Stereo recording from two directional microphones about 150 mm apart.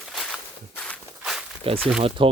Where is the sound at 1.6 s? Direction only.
40° right (ahead or behind).